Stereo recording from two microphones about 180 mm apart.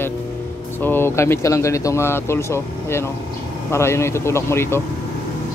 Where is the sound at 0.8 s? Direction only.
15° left (ahead or behind).